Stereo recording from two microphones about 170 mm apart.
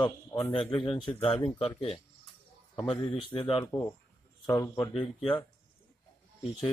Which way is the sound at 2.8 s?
30° left (ahead or behind).